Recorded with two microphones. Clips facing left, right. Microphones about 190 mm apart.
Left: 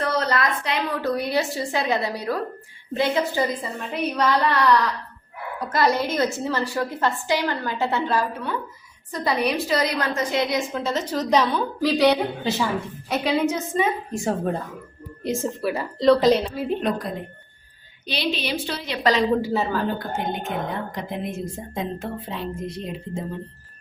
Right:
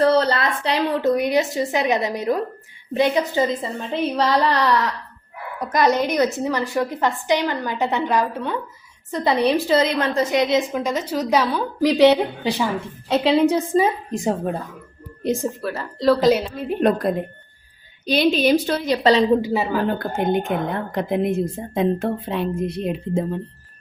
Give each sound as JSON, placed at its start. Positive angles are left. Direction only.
{"t": 0.0, "sound": "a woman's voice", "side_deg": -30}
{"t": 14.1, "sound": "a woman's voice", "side_deg": -20}
{"t": 15.6, "sound": "a woman's voice", "side_deg": 10}
{"t": 16.0, "sound": "a woman's voice", "side_deg": 0}
{"t": 18.0, "sound": "a woman's voice", "side_deg": -45}
{"t": 19.4, "sound": "a woman's voice", "side_deg": -10}
{"t": 19.9, "sound": "a woman's voice", "side_deg": -55}